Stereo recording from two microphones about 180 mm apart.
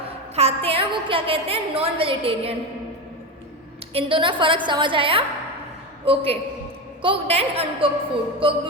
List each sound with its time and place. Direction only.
0.3 s a woman's voice: 35° right (ahead or behind)
3.9 s a woman's voice: 30° right (ahead or behind)